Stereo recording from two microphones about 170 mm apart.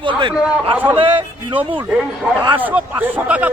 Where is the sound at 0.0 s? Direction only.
30° right (ahead or behind).